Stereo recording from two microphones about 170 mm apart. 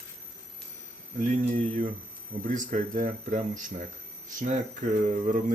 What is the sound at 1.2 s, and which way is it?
Speech, 50° right (ahead or behind).